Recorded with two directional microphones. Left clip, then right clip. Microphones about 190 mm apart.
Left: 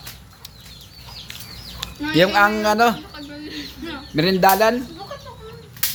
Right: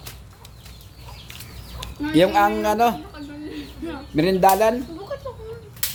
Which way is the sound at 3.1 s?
45° right (ahead or behind).